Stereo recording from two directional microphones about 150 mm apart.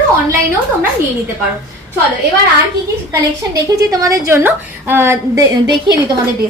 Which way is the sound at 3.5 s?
25° right (ahead or behind).